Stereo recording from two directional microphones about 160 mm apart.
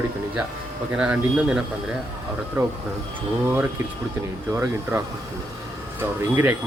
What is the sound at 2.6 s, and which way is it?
Speech, 20° right (ahead or behind).